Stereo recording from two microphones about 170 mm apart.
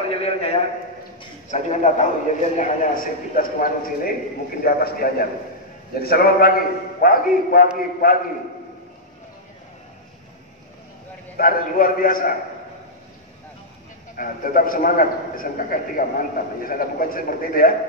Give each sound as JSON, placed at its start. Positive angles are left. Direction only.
{"t": 0.1, "sound": "a man's voice", "side_deg": 35}
{"t": 11.3, "sound": "a man's voice", "side_deg": 55}
{"t": 14.1, "sound": "a man's voice", "side_deg": 55}